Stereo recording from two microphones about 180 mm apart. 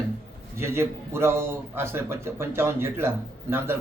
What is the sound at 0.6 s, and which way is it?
Speech, 15° right (ahead or behind).